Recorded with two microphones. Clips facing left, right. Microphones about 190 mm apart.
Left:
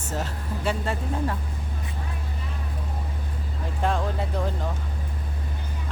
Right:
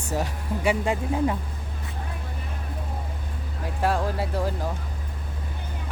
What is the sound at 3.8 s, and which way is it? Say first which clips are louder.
Speech: right 2 dB; 5° right (ahead or behind).